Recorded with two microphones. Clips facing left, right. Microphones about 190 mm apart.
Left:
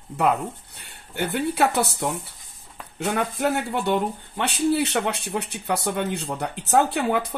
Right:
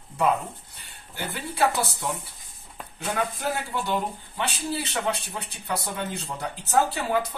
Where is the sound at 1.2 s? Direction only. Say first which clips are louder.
Left 4 dB; 65° left (ahead or behind).